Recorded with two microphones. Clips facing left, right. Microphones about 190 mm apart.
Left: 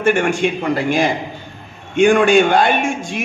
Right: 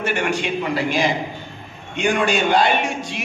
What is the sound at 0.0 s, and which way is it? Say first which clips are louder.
A man's voice: left 7 dB; 50° left (ahead or behind).